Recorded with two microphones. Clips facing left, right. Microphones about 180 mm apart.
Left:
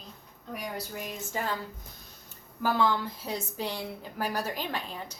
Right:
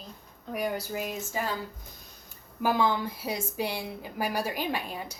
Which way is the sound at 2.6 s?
15° right (ahead or behind).